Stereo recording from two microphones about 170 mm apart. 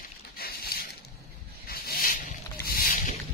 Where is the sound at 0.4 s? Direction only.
65° left (ahead or behind).